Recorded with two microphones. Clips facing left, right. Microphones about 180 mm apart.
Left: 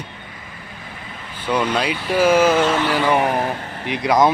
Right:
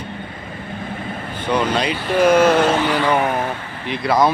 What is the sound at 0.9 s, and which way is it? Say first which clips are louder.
Vehicle: right 8 dB; 50° right (ahead or behind).